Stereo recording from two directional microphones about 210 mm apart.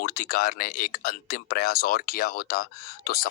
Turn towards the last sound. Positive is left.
turn(degrees=45)  # may be behind; listen again after turning